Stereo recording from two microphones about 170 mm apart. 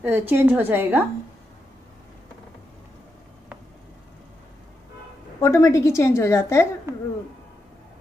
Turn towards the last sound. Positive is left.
turn(degrees=-15)  # may be behind; listen again after turning